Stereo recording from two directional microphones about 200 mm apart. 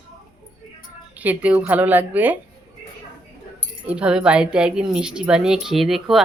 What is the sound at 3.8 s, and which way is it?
Speech, 5° right (ahead or behind).